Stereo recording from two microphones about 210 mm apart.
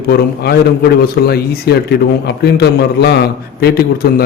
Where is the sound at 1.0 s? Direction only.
50° left (ahead or behind).